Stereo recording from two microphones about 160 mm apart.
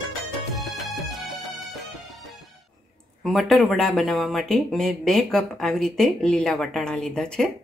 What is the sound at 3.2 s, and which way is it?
Speech, centre (ahead or behind).